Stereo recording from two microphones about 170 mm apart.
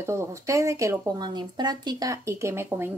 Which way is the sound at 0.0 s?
15° right (ahead or behind).